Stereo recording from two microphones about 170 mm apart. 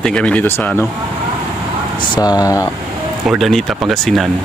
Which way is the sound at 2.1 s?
20° left (ahead or behind).